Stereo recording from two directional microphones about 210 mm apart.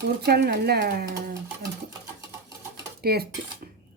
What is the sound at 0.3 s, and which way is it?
Speech, 50° right (ahead or behind).